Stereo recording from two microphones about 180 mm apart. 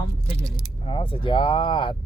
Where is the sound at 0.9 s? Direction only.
30° left (ahead or behind).